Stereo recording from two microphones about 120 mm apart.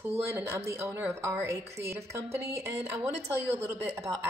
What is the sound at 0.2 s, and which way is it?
A woman's voice, 20° right (ahead or behind).